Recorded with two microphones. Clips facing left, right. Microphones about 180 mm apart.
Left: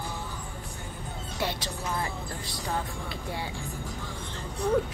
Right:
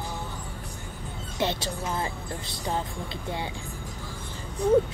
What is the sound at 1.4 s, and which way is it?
Speech, 25° right (ahead or behind).